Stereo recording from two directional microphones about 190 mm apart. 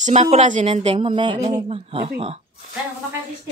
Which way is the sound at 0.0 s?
35° right (ahead or behind).